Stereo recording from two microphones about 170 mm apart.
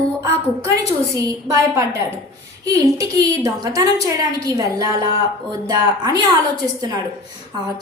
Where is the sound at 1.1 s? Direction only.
20° right (ahead or behind).